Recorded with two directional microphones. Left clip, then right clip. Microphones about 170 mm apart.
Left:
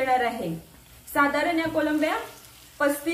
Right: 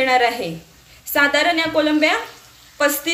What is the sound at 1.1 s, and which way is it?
Speech, 25° right (ahead or behind).